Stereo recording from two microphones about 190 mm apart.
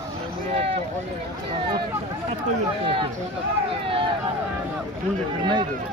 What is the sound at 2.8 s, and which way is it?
Speech, 30° right (ahead or behind).